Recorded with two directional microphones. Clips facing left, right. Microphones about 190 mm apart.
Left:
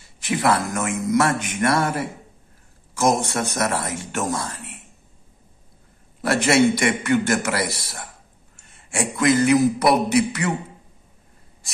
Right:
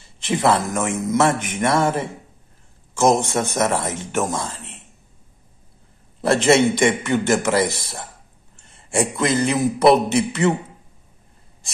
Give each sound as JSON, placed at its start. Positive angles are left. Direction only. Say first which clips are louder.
{"t": 0.3, "sound": "speech", "louder": "right 2 dB", "side_deg": -25}
{"t": 6.2, "sound": "speech", "louder": "right 2 dB", "side_deg": -25}